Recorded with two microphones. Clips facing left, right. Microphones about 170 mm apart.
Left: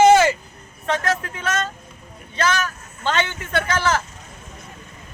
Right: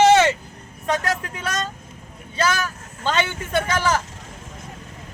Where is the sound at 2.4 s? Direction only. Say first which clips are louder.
Left 1 dB; 10° right (ahead or behind).